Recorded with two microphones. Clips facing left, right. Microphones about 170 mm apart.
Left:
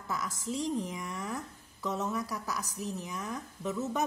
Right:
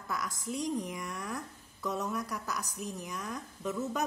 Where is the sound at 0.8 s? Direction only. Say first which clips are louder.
Left 1 dB; centre (ahead or behind).